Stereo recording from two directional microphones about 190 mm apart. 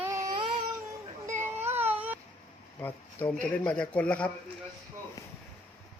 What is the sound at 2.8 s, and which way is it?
Speech, 10° left (ahead or behind).